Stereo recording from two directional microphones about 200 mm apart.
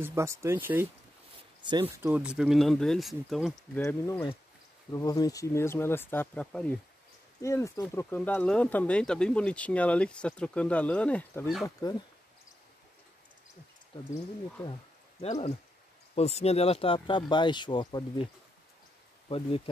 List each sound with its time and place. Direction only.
0.0 s speech: 15° right (ahead or behind)
1.6 s speech: 25° right (ahead or behind)
2.0 s speech: 5° right (ahead or behind)
3.7 s speech: 10° left (ahead or behind)
11.6 s speech: 20° left (ahead or behind)
14.1 s speech: 20° left (ahead or behind)
15.1 s speech: 35° left (ahead or behind)
19.2 s speech: 25° left (ahead or behind)